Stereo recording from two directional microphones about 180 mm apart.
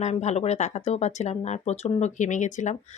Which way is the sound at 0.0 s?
40° left (ahead or behind).